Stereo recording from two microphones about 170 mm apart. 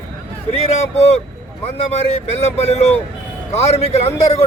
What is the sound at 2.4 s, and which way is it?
A man's voice, 35° left (ahead or behind).